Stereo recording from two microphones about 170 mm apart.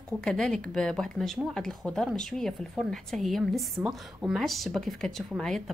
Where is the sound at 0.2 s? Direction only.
5° left (ahead or behind).